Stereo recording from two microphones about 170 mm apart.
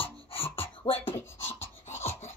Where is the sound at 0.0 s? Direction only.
35° left (ahead or behind).